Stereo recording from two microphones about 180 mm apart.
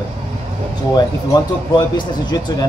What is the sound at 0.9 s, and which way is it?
A man's voice, 25° left (ahead or behind).